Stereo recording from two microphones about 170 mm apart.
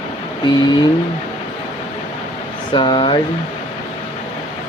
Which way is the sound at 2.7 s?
30° left (ahead or behind).